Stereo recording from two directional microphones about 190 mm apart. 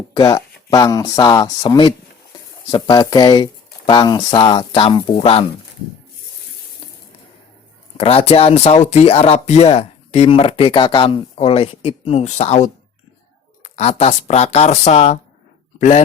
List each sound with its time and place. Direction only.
0.1 s speech: 20° left (ahead or behind)
7.9 s speech: 30° left (ahead or behind)
13.7 s speech: 35° left (ahead or behind)